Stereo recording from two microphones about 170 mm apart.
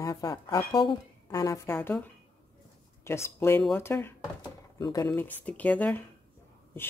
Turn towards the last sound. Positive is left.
turn(degrees=10)  # may be behind; listen again after turning